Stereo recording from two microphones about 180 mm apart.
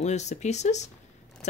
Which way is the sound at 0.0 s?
40° left (ahead or behind).